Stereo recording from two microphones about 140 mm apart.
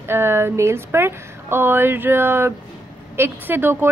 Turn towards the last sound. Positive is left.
turn(degrees=-15)  # may be behind; listen again after turning